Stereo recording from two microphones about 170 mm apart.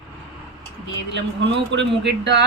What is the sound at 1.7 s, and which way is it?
Speech, 90° right.